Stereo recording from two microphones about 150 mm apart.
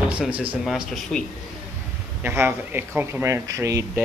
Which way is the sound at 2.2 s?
15° right (ahead or behind).